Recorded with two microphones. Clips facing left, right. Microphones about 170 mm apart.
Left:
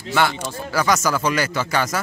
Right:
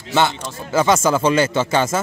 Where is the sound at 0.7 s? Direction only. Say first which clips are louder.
Right 4 dB; 25° right (ahead or behind).